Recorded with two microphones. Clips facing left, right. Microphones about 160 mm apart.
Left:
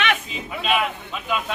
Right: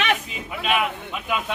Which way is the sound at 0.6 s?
10° right (ahead or behind).